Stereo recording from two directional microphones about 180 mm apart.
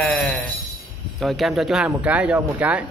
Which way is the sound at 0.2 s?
5° left (ahead or behind).